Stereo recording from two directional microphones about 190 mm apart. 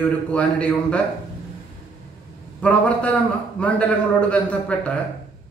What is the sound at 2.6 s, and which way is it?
A man's voice, 5° left (ahead or behind).